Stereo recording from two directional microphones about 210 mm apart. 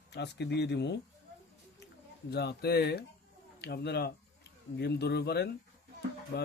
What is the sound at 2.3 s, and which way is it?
Speech, 50° left (ahead or behind).